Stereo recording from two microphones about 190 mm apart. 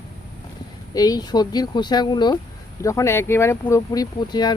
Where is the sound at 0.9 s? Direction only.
20° left (ahead or behind).